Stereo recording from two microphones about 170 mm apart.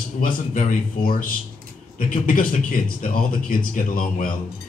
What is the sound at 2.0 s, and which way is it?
Speech, 55° left (ahead or behind).